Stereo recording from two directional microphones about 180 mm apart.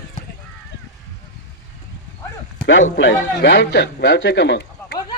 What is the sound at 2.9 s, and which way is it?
A man's voice, 80° left.